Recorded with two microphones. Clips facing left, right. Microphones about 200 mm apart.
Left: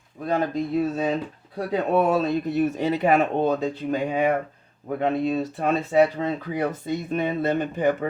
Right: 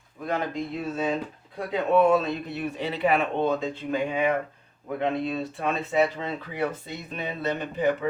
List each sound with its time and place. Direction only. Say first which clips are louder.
0.3 s speech: left 5 dB; 40° left (ahead or behind)